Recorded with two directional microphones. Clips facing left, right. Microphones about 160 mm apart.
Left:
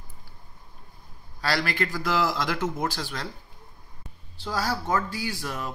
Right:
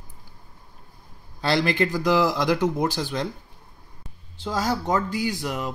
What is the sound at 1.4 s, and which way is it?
Speech, 25° right (ahead or behind).